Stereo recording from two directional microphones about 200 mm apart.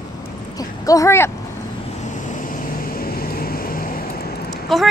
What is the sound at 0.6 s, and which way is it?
Speech, 15° left (ahead or behind).